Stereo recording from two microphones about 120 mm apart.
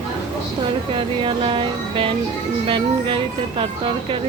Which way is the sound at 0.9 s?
45° right (ahead or behind).